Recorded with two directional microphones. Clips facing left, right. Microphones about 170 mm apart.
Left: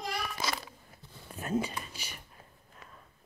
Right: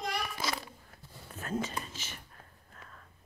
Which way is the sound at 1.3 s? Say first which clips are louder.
Left 3 dB; 10° left (ahead or behind).